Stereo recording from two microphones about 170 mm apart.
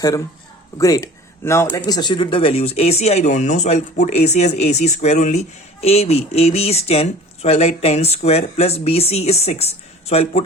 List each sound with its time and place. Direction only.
0.8 s speech: 20° left (ahead or behind); by 10.4 s 35° left (ahead or behind)